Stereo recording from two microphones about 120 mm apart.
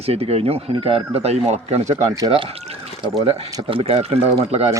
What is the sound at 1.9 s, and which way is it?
Speech, 25° right (ahead or behind).